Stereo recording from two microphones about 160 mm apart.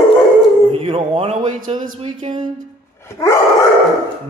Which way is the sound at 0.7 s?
35° right (ahead or behind).